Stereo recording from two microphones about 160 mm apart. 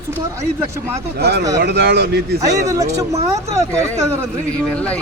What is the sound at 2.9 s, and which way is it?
Speech, 20° right (ahead or behind).